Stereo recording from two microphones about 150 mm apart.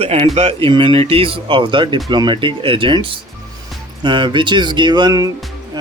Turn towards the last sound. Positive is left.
turn(degrees=-25)  # may be behind; listen again after turning